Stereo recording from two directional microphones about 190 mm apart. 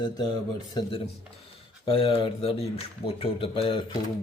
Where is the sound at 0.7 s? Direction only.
30° left (ahead or behind).